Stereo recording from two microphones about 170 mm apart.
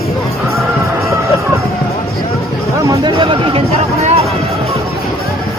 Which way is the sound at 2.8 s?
25° right (ahead or behind).